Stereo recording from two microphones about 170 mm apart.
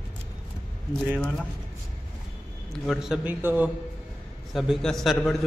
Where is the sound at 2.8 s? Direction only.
5° right (ahead or behind).